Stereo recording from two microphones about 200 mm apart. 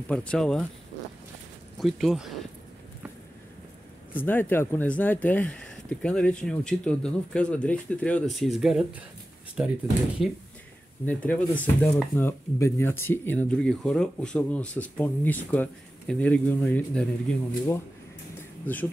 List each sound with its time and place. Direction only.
0.1 s speech: 5° left (ahead or behind)
1.8 s speech: centre (ahead or behind)
4.1 s speech: 10° left (ahead or behind); by 9.7 s 5° right (ahead or behind)
11.1 s speech: 10° left (ahead or behind)